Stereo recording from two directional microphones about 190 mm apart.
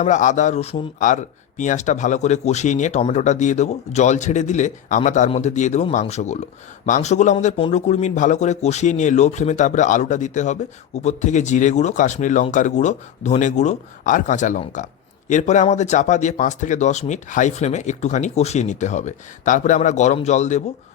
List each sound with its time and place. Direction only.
0.0 s a man's voice: 40° left (ahead or behind)